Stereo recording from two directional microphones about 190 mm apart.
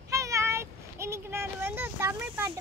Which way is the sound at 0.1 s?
15° right (ahead or behind).